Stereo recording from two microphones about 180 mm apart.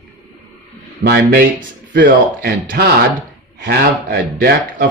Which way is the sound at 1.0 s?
60° right (ahead or behind).